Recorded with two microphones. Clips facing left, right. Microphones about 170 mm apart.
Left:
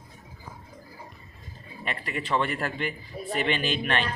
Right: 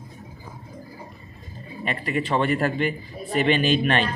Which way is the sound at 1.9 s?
25° right (ahead or behind).